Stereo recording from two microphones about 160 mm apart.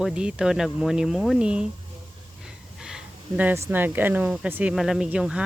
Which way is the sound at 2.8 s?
5° right (ahead or behind).